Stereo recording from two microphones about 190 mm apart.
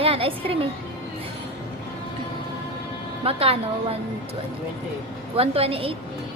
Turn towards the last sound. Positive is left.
turn(degrees=-30)  # may be behind; listen again after turning